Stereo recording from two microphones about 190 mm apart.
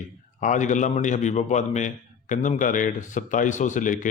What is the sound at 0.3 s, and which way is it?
A man's voice, 40° left (ahead or behind).